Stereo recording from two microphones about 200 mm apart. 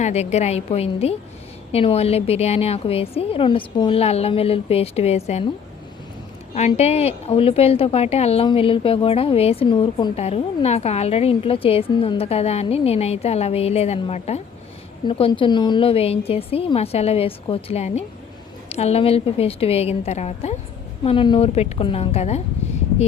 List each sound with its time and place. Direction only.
0.0 s a woman's voice: 35° left (ahead or behind)
6.5 s a woman's voice: 35° left (ahead or behind)